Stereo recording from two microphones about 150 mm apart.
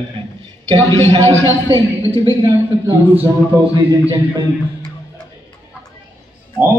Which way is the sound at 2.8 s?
15° right (ahead or behind).